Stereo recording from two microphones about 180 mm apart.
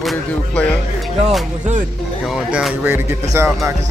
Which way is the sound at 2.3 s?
5° right (ahead or behind).